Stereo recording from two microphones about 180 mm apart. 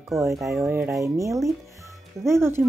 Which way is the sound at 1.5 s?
15° right (ahead or behind).